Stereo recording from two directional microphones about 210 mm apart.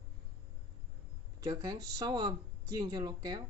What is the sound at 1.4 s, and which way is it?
Speech, 20° right (ahead or behind).